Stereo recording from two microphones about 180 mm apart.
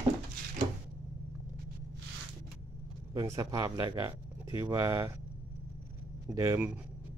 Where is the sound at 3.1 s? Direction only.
20° right (ahead or behind).